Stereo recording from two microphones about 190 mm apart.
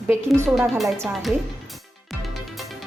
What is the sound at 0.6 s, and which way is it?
Speech, centre (ahead or behind).